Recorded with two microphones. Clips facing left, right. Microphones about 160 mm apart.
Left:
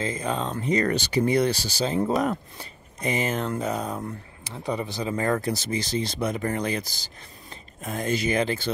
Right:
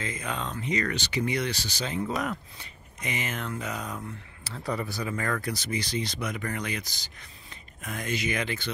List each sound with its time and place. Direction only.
0.0 s speech: 30° left (ahead or behind)
4.5 s speech: 20° left (ahead or behind)